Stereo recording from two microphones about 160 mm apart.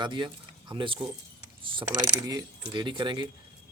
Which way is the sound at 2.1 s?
25° right (ahead or behind).